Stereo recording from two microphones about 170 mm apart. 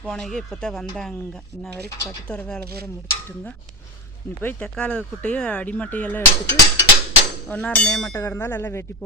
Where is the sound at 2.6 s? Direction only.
65° right (ahead or behind).